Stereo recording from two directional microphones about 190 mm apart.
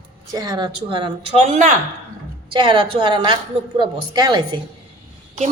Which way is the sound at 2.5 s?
25° right (ahead or behind).